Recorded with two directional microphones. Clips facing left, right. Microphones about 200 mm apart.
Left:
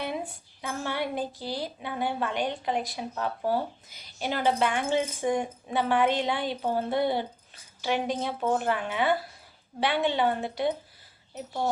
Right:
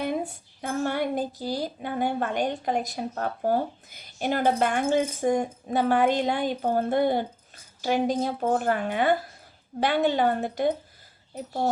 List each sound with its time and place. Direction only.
0.0 s speech: 45° right (ahead or behind)